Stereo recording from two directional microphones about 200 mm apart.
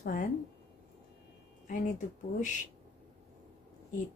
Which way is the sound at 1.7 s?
40° left (ahead or behind).